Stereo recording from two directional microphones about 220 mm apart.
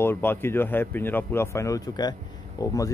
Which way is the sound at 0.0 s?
10° left (ahead or behind).